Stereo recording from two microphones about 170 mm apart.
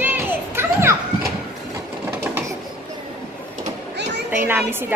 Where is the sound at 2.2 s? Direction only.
10° right (ahead or behind).